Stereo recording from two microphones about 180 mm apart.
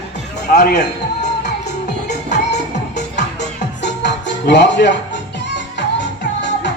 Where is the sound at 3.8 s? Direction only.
70° left (ahead or behind).